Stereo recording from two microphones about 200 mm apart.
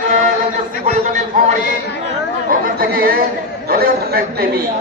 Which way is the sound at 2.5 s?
50° right (ahead or behind).